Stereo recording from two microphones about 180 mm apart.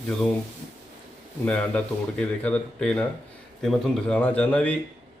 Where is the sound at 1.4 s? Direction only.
10° left (ahead or behind).